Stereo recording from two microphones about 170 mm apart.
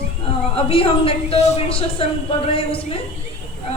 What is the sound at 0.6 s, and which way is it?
A woman's voice, 35° left (ahead or behind).